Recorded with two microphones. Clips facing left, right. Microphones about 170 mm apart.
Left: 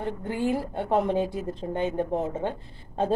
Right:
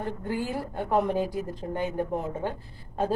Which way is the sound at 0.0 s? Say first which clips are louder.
Left 3 dB; 20° left (ahead or behind).